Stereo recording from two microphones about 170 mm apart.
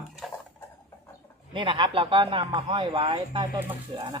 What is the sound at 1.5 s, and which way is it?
Speech, 30° right (ahead or behind).